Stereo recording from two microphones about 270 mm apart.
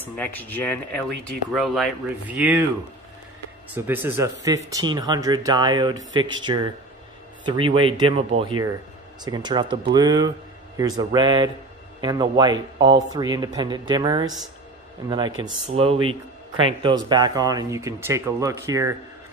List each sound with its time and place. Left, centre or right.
0.0 s speech: centre
3.7 s speech: centre